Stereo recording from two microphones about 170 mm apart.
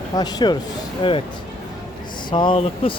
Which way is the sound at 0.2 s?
25° left (ahead or behind).